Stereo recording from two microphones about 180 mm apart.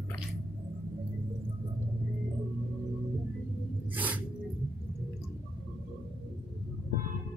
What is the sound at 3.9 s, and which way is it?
Music, 10° right (ahead or behind).